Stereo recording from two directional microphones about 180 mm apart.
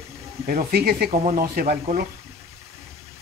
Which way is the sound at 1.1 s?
45° right (ahead or behind).